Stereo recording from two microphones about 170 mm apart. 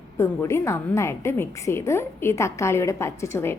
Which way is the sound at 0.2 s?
15° left (ahead or behind).